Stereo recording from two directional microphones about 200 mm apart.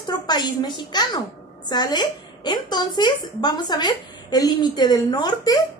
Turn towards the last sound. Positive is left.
turn(degrees=20)  # may be behind; listen again after turning